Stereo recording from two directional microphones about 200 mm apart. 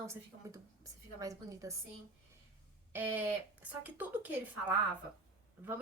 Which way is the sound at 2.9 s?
10° right (ahead or behind).